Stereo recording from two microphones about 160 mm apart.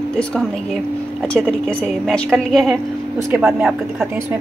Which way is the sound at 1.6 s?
5° left (ahead or behind).